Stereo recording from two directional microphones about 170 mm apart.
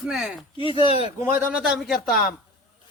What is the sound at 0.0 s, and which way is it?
Speech, 5° right (ahead or behind).